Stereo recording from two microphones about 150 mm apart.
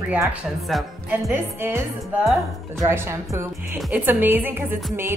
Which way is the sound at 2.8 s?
15° right (ahead or behind).